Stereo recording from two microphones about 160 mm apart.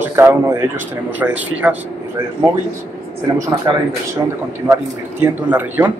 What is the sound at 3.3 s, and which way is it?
A man's voice, 20° right (ahead or behind).